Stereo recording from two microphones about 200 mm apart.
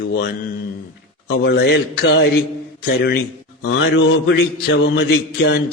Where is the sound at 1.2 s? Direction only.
65° left (ahead or behind).